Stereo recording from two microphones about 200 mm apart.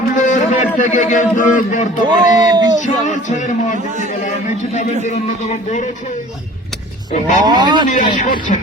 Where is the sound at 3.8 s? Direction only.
35° right (ahead or behind).